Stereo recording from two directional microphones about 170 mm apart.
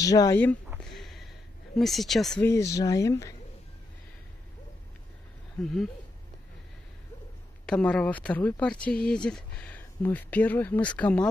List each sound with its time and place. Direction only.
0.0 s speech: 20° left (ahead or behind)
0.7 s a sound: centre (ahead or behind)
1.8 s speech: centre (ahead or behind)
2.4 s speech: 15° left (ahead or behind)
5.6 s speech: 5° left (ahead or behind)
7.6 s speech: 5° left (ahead or behind)